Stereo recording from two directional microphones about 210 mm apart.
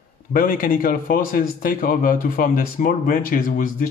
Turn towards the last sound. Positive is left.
turn(degrees=40)  # may be behind; listen again after turning